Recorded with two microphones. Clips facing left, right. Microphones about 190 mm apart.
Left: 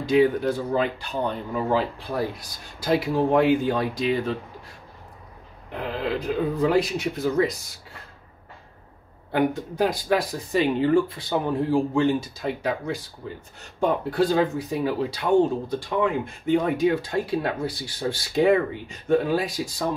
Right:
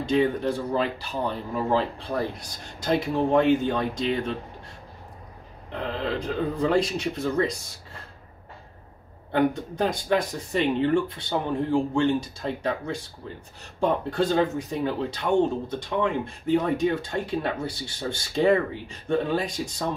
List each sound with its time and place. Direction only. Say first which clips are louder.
0.1 s speech: left 4 dB; 5° left (ahead or behind)
5.7 s speech: left 1 dB; 5° left (ahead or behind)
9.3 s speech: even; 5° left (ahead or behind)
17.6 s speech: left 3 dB; 25° right (ahead or behind)
18.3 s speech: left 1 dB; 5° left (ahead or behind)